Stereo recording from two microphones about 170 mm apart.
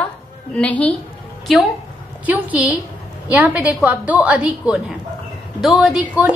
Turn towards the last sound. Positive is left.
turn(degrees=-5)  # may be behind; listen again after turning